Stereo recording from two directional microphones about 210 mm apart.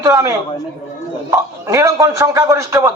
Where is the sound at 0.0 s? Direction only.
15° right (ahead or behind).